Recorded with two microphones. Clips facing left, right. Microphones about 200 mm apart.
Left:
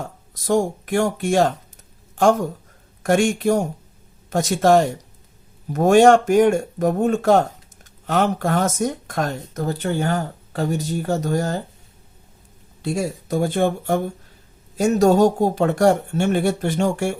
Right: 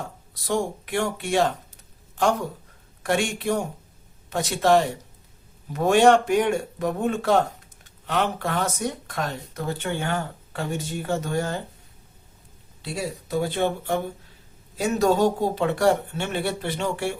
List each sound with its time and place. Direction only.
0.3 s a man's voice: 45° left (ahead or behind)
12.8 s speech: 45° left (ahead or behind)